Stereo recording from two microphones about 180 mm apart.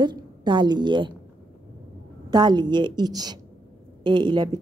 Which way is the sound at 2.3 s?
25° right (ahead or behind).